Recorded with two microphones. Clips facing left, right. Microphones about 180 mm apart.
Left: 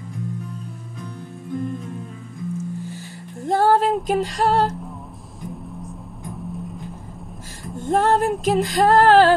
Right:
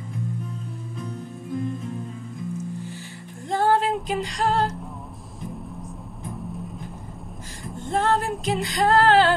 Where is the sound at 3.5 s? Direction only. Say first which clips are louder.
Left 4 dB; 40° left (ahead or behind).